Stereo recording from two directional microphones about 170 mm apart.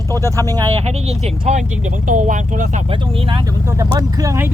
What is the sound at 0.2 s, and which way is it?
Speech, 20° right (ahead or behind).